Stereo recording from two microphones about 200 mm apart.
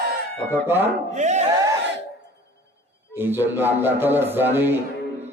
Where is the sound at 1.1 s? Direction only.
35° right (ahead or behind).